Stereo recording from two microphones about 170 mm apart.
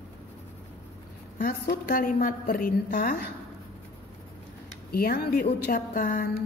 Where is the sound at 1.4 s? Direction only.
55° left (ahead or behind).